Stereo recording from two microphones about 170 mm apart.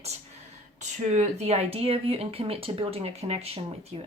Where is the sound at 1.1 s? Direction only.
40° right (ahead or behind).